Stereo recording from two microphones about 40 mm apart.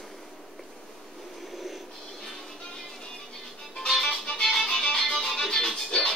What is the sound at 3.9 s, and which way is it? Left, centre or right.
Music, centre.